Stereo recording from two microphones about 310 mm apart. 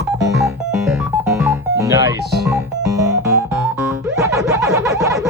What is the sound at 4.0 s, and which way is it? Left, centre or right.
Music, centre.